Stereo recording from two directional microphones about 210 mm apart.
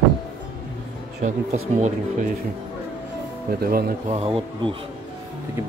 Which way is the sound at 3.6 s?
45° right (ahead or behind).